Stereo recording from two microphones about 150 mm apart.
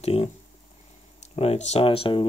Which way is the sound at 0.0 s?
45° left (ahead or behind).